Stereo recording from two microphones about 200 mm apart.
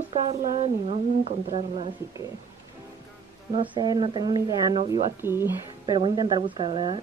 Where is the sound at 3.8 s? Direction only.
20° right (ahead or behind).